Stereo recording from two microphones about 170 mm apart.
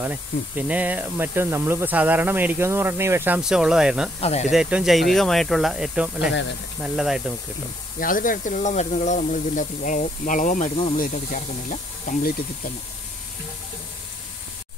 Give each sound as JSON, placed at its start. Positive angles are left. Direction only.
{"t": 0.0, "sound": "speech", "side_deg": -10}
{"t": 4.2, "sound": "speech", "side_deg": 40}
{"t": 4.5, "sound": "speech", "side_deg": -5}
{"t": 8.0, "sound": "speech", "side_deg": 55}